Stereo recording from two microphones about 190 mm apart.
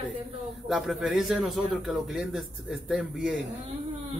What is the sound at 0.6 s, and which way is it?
Speech, centre (ahead or behind).